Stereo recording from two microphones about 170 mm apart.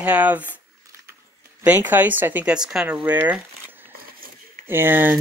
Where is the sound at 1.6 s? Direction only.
10° right (ahead or behind).